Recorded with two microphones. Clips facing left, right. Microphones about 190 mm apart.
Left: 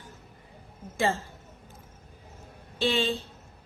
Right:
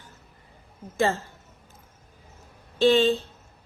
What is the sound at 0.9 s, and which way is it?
Speech, 10° left (ahead or behind).